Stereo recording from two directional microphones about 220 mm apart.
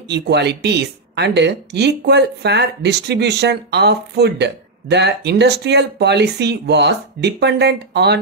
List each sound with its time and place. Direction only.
0.1 s a woman's voice: 50° right (ahead or behind)